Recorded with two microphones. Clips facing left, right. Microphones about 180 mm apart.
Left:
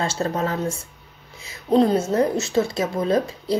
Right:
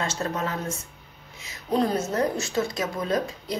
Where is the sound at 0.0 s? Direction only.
30° left (ahead or behind).